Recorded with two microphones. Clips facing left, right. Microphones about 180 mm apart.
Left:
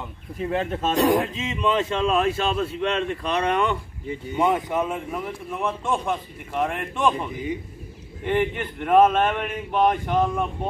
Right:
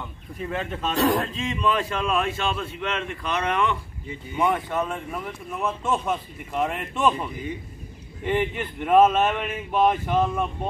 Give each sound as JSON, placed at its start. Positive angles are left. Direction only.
{"t": 0.4, "sound": "speech", "side_deg": 30}
{"t": 0.9, "sound": "speech", "side_deg": 15}
{"t": 4.4, "sound": "speech", "side_deg": 20}
{"t": 7.1, "sound": "speech", "side_deg": 10}
{"t": 8.3, "sound": "speech", "side_deg": -10}